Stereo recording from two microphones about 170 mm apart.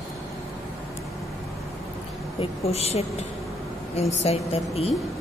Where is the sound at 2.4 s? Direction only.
35° left (ahead or behind).